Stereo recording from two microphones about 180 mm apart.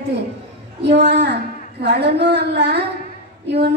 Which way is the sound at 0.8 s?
70° right (ahead or behind).